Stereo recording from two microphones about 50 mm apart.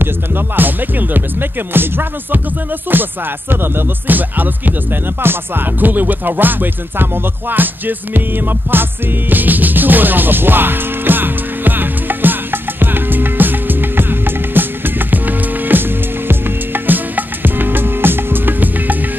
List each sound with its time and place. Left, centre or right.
0.6 s music: right